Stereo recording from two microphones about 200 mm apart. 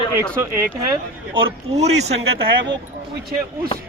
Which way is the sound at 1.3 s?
30° right (ahead or behind).